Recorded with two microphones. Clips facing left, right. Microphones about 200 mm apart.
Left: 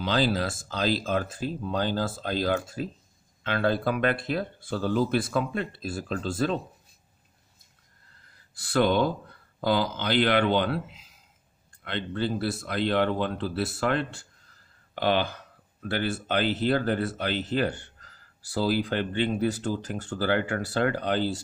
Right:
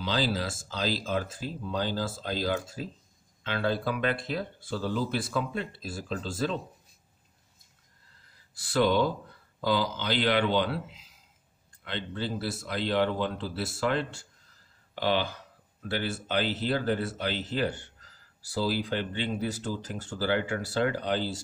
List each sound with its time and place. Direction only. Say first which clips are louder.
0.0 s speech: left 4 dB; 55° left (ahead or behind)
8.8 s speech: even; 55° left (ahead or behind)